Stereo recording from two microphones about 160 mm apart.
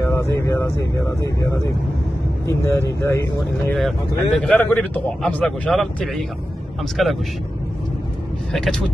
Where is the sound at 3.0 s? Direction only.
15° left (ahead or behind).